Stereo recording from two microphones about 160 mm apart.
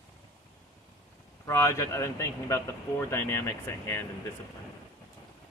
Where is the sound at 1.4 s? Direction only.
15° left (ahead or behind).